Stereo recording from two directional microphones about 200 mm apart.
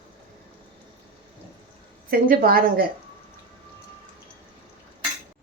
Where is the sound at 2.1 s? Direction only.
50° right (ahead or behind).